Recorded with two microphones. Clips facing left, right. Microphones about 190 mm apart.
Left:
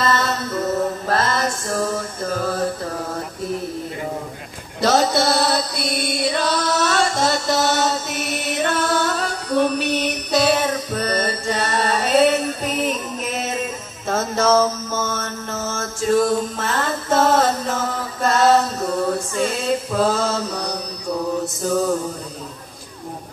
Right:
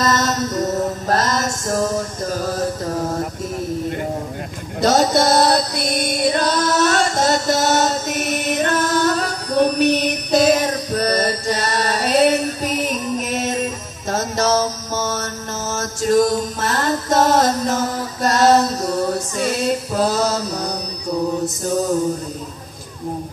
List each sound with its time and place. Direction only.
0.0 s music: 40° right (ahead or behind)
4.8 s music: 40° right (ahead or behind)